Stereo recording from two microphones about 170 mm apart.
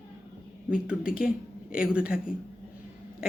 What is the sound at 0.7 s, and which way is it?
A woman's voice, 5° right (ahead or behind).